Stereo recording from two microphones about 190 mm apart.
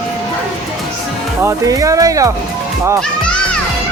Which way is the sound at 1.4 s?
15° right (ahead or behind).